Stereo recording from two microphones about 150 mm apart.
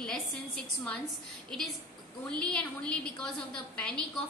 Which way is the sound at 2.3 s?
5° left (ahead or behind).